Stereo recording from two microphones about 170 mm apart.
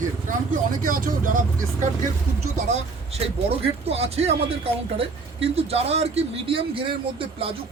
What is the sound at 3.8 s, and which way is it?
A man's voice, 35° right (ahead or behind).